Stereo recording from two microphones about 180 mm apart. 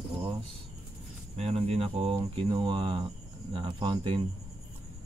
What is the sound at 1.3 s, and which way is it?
Speech, 35° right (ahead or behind).